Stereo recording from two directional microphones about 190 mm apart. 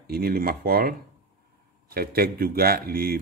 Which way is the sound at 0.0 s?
55° right (ahead or behind).